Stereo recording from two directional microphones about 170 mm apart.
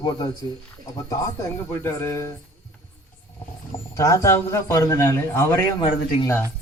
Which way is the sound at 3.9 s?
15° left (ahead or behind).